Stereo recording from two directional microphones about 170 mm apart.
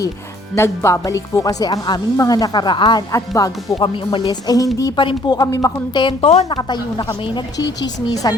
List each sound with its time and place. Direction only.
0.5 s speech: 15° left (ahead or behind)